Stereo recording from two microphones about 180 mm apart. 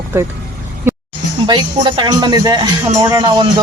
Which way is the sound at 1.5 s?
25° right (ahead or behind).